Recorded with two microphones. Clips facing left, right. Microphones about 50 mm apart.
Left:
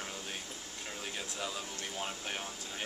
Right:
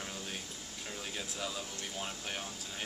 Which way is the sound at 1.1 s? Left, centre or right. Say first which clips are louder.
Even; centre.